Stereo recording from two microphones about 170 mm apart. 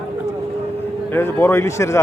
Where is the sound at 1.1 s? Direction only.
15° left (ahead or behind).